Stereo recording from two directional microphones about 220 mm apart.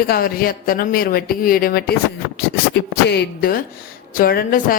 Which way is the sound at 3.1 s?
45° left (ahead or behind).